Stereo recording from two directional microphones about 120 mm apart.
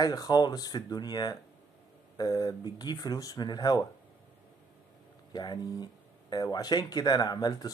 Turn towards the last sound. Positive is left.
turn(degrees=35)  # may be behind; listen again after turning